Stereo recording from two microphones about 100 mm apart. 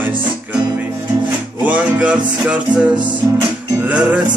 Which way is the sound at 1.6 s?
15° right (ahead or behind).